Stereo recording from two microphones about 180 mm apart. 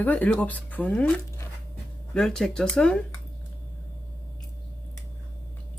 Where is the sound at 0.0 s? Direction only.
10° left (ahead or behind).